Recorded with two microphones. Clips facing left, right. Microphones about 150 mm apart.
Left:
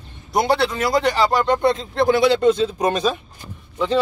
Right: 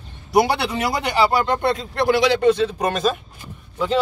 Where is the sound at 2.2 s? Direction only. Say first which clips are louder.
Left 1 dB; 65° right (ahead or behind).